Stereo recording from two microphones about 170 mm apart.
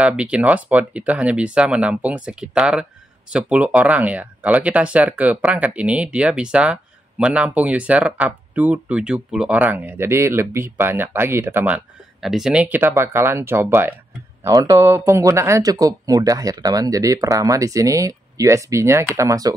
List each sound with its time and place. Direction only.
0.0 s speech: 5° right (ahead or behind)